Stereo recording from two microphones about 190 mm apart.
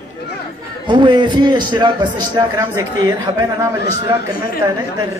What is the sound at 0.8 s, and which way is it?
A man's voice, 25° right (ahead or behind).